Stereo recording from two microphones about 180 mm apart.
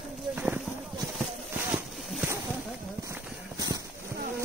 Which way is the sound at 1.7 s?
10° right (ahead or behind).